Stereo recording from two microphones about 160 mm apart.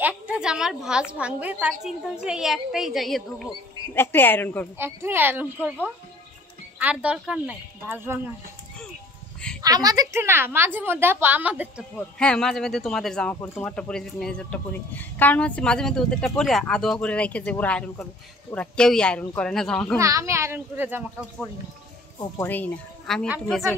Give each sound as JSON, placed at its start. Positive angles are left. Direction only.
{"t": 0.0, "sound": "a woman's voice", "side_deg": -5}
{"t": 3.9, "sound": "speech", "side_deg": 15}
{"t": 4.7, "sound": "a woman's voice", "side_deg": -15}
{"t": 6.8, "sound": "a woman's voice", "side_deg": -10}
{"t": 9.6, "sound": "a woman's voice", "side_deg": -25}
{"t": 12.2, "sound": "speech", "side_deg": 5}
{"t": 20.0, "sound": "a woman's voice", "side_deg": -20}
{"t": 22.4, "sound": "speech", "side_deg": 10}